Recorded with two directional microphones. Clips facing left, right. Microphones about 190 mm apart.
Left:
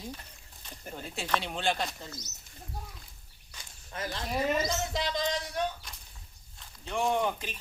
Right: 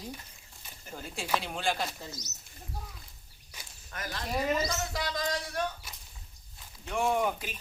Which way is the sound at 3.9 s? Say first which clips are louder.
Left 1 dB; 25° left (ahead or behind).